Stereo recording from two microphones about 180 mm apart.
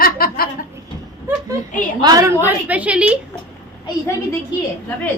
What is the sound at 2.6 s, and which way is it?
Speech, 10° right (ahead or behind).